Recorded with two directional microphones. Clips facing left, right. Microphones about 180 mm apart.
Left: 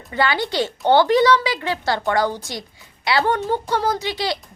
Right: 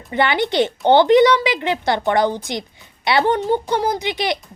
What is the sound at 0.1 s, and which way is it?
A woman's voice, 20° right (ahead or behind).